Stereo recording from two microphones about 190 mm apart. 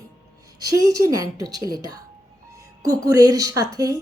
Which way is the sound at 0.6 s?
20° right (ahead or behind).